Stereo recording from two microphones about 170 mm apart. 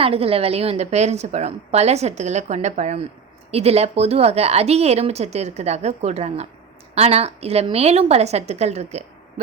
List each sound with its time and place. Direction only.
0.0 s a woman's voice: 35° right (ahead or behind)